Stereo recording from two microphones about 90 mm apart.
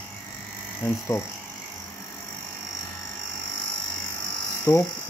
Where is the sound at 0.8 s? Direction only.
30° left (ahead or behind).